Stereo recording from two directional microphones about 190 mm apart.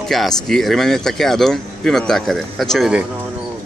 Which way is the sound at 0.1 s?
Centre (ahead or behind).